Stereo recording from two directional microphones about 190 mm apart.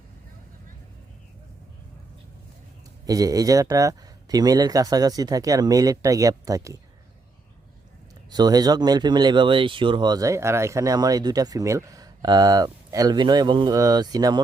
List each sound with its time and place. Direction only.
3.1 s speech: 20° right (ahead or behind)
8.3 s speech: 20° right (ahead or behind)